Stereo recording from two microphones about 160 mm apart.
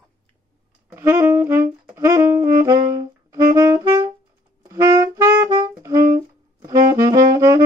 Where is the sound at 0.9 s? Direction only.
15° right (ahead or behind).